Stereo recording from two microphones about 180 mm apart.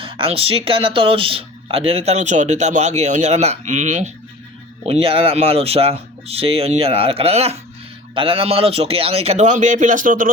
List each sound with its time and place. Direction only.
0.0 s speech: 30° right (ahead or behind)
4.9 s speech: 30° right (ahead or behind); by 10.3 s 50° right (ahead or behind)